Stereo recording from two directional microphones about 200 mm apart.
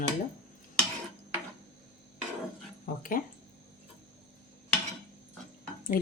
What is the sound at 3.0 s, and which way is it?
Speech, 45° left (ahead or behind).